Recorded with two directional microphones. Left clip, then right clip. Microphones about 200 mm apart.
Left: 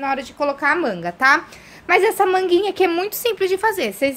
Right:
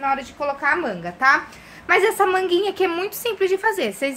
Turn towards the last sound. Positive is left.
turn(degrees=30)  # may be behind; listen again after turning